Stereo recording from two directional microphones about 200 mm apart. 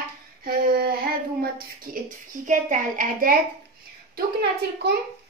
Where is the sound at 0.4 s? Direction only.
50° right (ahead or behind).